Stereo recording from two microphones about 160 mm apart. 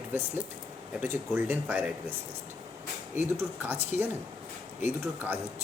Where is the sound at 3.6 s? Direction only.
10° right (ahead or behind).